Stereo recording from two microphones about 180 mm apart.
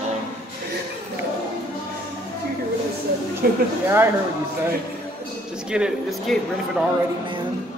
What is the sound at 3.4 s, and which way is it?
Speech, 55° right (ahead or behind).